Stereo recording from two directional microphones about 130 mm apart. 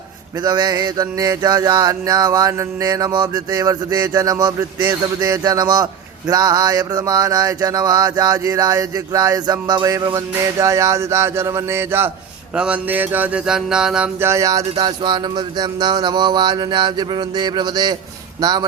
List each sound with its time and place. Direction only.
0.4 s a sound: 30° right (ahead or behind)
12.5 s speech: 10° right (ahead or behind)
14.2 s a man's voice: 20° right (ahead or behind)